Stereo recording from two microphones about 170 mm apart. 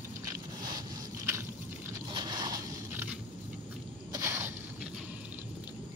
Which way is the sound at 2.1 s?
25° right (ahead or behind).